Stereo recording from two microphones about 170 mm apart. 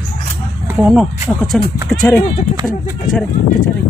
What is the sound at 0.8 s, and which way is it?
Speech, 10° right (ahead or behind).